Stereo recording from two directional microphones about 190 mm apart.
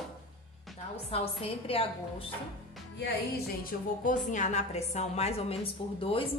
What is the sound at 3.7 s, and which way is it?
A woman's voice, 45° left (ahead or behind).